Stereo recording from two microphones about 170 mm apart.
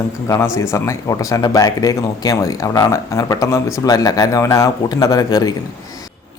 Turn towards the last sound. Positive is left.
turn(degrees=20)  # may be behind; listen again after turning